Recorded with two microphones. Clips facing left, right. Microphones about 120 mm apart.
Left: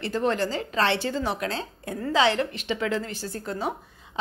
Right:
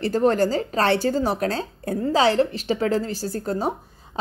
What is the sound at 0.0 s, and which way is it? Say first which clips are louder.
A woman's voice: right 6 dB; 40° right (ahead or behind).